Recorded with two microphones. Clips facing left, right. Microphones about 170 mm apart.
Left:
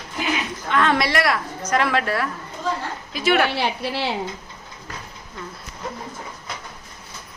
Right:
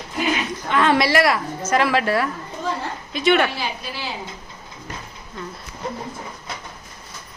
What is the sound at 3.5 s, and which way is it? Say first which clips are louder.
Speech: left 5 dB; 70° left (ahead or behind).